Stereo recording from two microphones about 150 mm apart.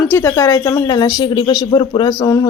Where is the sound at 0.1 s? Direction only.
20° left (ahead or behind).